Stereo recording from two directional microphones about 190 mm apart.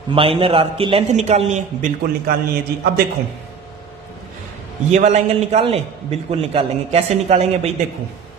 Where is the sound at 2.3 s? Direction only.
50° right (ahead or behind).